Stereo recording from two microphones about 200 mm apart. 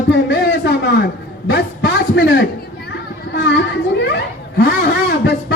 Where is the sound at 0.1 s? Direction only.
60° left (ahead or behind).